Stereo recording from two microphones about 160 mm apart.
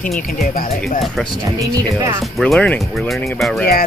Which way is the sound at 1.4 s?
20° right (ahead or behind).